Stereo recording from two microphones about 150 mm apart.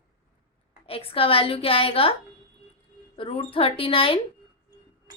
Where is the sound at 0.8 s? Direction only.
40° left (ahead or behind).